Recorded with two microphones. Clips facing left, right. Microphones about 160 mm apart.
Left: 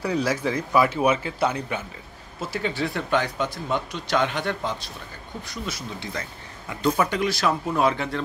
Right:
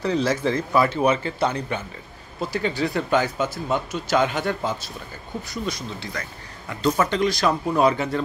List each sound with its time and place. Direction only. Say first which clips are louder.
0.0 s speech: right 2 dB; 10° left (ahead or behind)
6.2 s speech: even; 25° left (ahead or behind)
6.7 s speech: right 1 dB; 10° left (ahead or behind)